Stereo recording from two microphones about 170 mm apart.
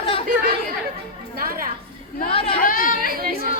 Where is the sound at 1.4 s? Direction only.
55° right (ahead or behind).